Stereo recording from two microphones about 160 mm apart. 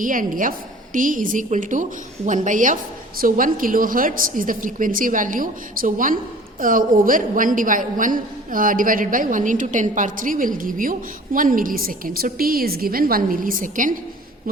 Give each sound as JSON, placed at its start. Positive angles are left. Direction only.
{"t": 0.0, "sound": "a woman's voice", "side_deg": -55}